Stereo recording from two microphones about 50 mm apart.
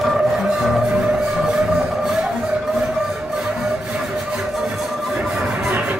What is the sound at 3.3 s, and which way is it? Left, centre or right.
Music, centre.